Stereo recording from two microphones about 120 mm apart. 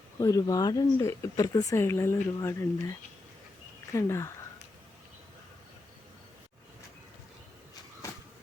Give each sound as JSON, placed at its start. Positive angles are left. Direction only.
{"t": 0.2, "sound": "speech", "side_deg": 30}
{"t": 3.9, "sound": "speech", "side_deg": 25}